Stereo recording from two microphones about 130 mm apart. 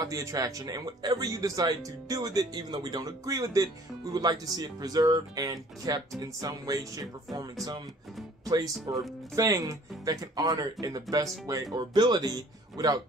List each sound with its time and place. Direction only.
0.0 s speech: 25° right (ahead or behind)
8.9 s speech: 30° right (ahead or behind)